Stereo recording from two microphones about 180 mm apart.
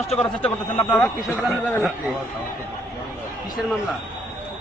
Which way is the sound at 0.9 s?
15° left (ahead or behind).